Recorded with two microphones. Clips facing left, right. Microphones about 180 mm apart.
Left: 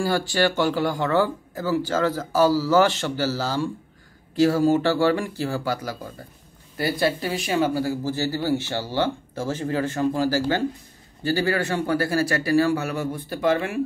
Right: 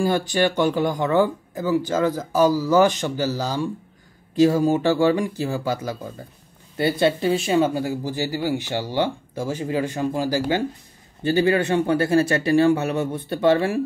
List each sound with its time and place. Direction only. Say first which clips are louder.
0.0 s speech: right 2 dB; 20° right (ahead or behind)